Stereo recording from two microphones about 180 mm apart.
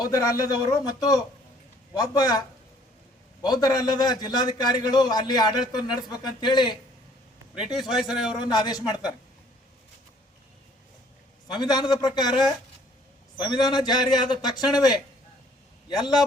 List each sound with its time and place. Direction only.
0.0 s a man's voice: 20° left (ahead or behind)
3.4 s a man's voice: 20° left (ahead or behind)
7.5 s a man's voice: centre (ahead or behind)
8.4 s a man's voice: 20° left (ahead or behind)
11.4 s a man's voice: 25° left (ahead or behind)